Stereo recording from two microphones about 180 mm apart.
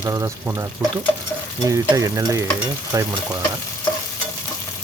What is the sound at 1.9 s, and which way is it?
Stir, 20° right (ahead or behind).